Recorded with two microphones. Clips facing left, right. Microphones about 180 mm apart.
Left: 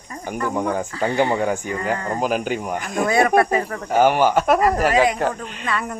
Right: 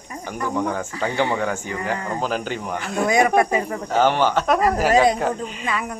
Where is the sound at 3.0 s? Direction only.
15° right (ahead or behind).